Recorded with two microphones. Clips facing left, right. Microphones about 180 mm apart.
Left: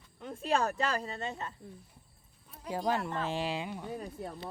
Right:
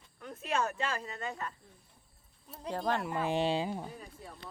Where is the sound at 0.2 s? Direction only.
25° left (ahead or behind).